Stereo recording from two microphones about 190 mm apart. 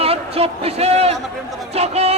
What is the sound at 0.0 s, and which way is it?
A man's voice, 30° right (ahead or behind).